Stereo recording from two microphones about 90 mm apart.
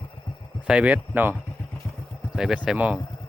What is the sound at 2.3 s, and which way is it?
Speech, 10° right (ahead or behind).